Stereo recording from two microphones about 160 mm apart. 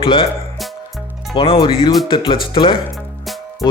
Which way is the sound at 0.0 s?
30° left (ahead or behind).